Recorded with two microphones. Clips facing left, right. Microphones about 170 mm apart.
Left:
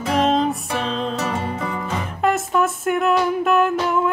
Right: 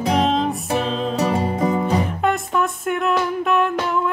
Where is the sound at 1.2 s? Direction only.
35° right (ahead or behind).